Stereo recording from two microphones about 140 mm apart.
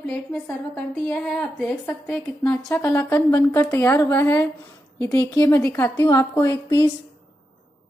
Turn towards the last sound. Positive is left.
turn(degrees=25)  # may be behind; listen again after turning